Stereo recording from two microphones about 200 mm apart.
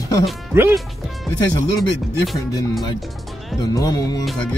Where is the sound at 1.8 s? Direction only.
Centre (ahead or behind).